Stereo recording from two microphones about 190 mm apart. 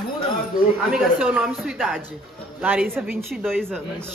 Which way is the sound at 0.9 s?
5° right (ahead or behind).